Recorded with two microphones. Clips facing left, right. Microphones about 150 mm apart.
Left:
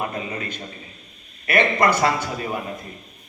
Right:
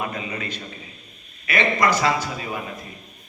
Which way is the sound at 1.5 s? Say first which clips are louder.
Left 2 dB; 55° left (ahead or behind).